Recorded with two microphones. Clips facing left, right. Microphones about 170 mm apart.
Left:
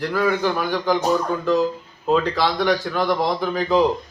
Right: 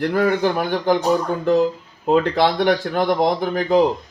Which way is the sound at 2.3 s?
55° right (ahead or behind).